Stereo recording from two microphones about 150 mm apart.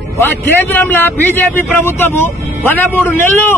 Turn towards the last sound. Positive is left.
turn(degrees=15)  # may be behind; listen again after turning